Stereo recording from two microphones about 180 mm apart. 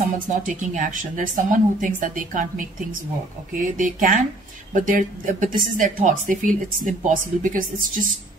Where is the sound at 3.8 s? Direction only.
45° right (ahead or behind).